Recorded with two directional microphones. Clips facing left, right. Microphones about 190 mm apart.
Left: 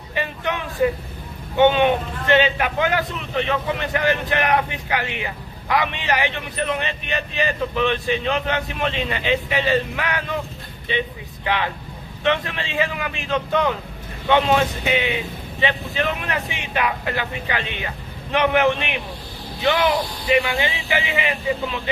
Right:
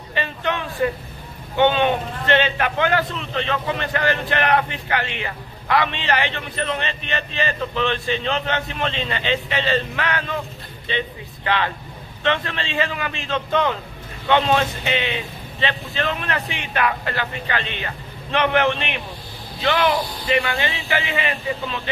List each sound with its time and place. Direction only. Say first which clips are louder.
0.1 s a man's voice: right 1 dB; 10° left (ahead or behind)